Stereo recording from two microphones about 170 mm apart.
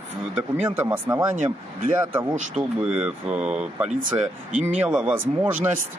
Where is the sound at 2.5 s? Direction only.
5° right (ahead or behind).